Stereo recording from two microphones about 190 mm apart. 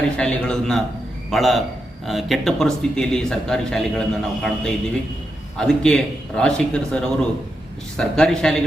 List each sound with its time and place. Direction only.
0.2 s a man's voice: 5° left (ahead or behind)